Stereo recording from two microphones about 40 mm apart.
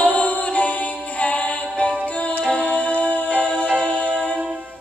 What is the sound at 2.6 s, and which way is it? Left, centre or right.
Music, left.